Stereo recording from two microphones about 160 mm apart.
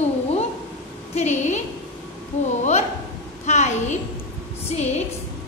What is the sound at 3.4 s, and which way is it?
Speech, 45° left (ahead or behind).